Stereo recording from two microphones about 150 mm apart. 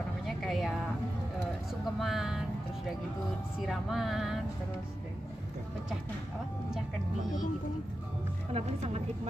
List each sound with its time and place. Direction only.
0.4 s a sound: centre (ahead or behind)
2.0 s vehicle: centre (ahead or behind)
3.6 s speech: centre (ahead or behind)
8.5 s a woman's voice: 45° right (ahead or behind)